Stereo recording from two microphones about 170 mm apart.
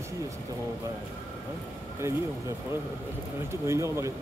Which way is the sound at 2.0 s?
15° right (ahead or behind).